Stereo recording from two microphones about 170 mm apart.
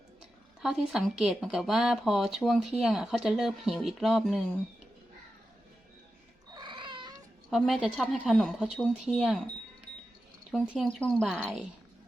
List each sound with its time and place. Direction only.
0.6 s speech: 5° right (ahead or behind)
6.5 s cat: 25° right (ahead or behind)
7.5 s speech: centre (ahead or behind)
10.5 s speech: centre (ahead or behind)